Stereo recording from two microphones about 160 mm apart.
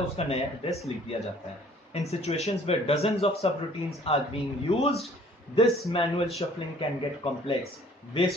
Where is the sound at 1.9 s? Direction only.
40° left (ahead or behind).